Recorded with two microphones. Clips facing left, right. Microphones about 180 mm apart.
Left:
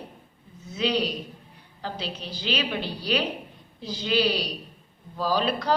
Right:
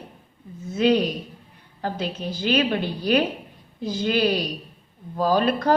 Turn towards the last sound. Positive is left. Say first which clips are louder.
# right 5 dB
turn(degrees=-50)  # may be behind; listen again after turning